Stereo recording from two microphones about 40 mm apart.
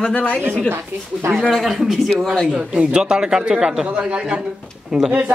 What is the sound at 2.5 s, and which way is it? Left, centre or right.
A man's voice, right.